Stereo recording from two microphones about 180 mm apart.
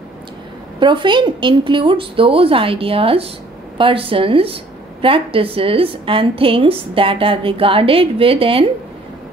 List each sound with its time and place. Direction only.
0.7 s a woman's voice: 25° right (ahead or behind)